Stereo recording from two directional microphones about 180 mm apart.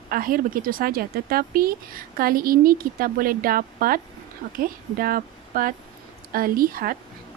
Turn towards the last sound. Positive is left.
turn(degrees=-55)  # may be behind; listen again after turning